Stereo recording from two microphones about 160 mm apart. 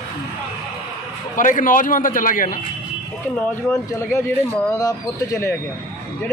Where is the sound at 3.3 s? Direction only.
10° left (ahead or behind).